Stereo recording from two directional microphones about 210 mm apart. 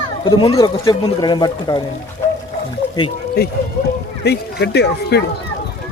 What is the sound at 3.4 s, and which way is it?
Speech, 45° left (ahead or behind).